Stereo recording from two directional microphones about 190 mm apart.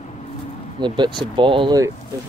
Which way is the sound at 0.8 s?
25° right (ahead or behind).